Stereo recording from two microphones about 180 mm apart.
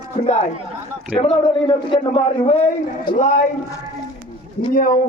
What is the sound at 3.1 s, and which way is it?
Speech, 45° left (ahead or behind).